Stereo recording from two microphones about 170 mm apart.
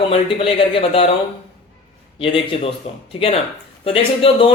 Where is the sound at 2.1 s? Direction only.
30° left (ahead or behind).